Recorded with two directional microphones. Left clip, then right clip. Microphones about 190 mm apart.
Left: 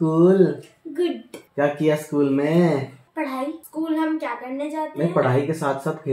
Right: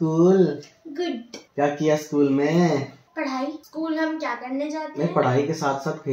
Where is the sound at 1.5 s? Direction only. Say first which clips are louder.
Left 1 dB; 20° left (ahead or behind).